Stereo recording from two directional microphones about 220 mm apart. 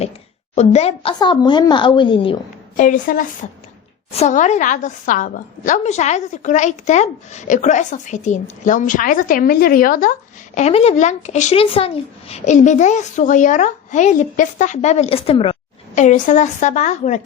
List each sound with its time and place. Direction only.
0.5 s a woman's voice: 30° left (ahead or behind)
2.7 s a woman's voice: 35° left (ahead or behind)